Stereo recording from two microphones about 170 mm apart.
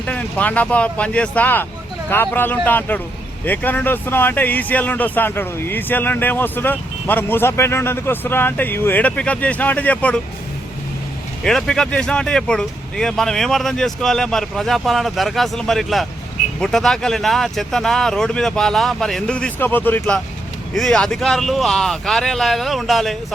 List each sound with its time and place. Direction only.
0.0 s speech: 10° left (ahead or behind)
11.4 s speech: 5° left (ahead or behind)